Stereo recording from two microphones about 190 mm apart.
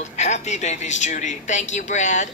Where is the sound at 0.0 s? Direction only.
35° left (ahead or behind).